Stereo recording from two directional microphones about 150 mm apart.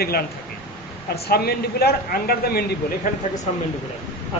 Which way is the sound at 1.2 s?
90° left.